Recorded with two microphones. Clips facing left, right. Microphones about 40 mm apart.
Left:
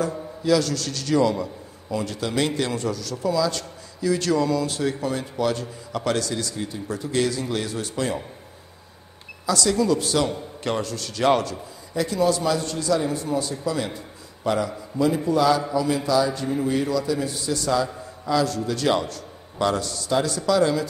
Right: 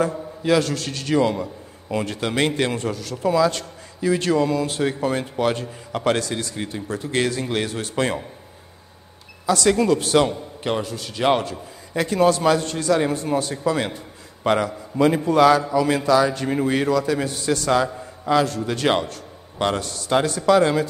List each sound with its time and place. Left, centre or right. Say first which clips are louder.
0.0 s a man's voice: right 3 dB; right
9.5 s a man's voice: right 3 dB; right
10.6 s a man's voice: right 2 dB; centre
11.9 s a man's voice: right 3 dB; right
18.2 s a man's voice: right 3 dB; right